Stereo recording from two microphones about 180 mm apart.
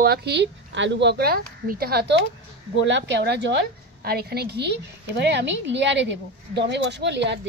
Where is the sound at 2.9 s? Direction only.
75° right (ahead or behind).